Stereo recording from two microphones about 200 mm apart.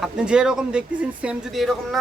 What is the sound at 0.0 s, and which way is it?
Speech, 5° right (ahead or behind).